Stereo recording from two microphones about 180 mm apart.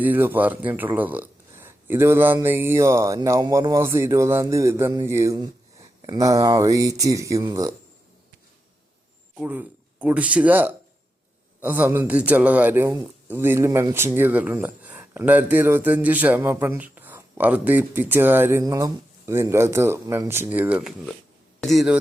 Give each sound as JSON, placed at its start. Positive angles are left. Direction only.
{"t": 0.0, "sound": "a man's voice", "side_deg": -10}
{"t": 9.3, "sound": "a man's voice", "side_deg": -10}